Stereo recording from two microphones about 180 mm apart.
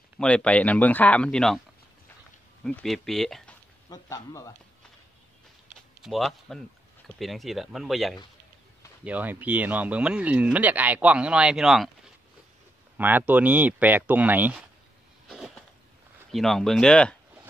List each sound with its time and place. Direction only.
0.2 s speech: 5° left (ahead or behind)
2.6 s speech: centre (ahead or behind)
3.9 s speech: 20° left (ahead or behind)
6.0 s speech: centre (ahead or behind)
12.9 s speech: 10° right (ahead or behind)
15.2 s a sound: 5° right (ahead or behind)
16.3 s speech: centre (ahead or behind)